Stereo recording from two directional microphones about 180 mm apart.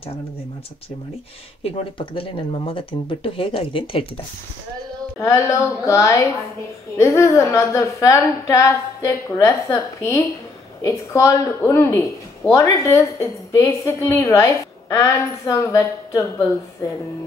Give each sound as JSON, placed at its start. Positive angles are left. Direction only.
{"t": 1.6, "sound": "speech", "side_deg": 30}
{"t": 5.2, "sound": "a woman's voice", "side_deg": 15}